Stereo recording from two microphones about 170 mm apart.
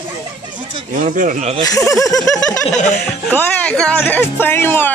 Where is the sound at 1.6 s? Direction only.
20° left (ahead or behind).